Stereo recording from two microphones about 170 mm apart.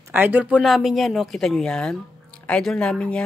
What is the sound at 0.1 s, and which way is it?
Speech, 10° right (ahead or behind).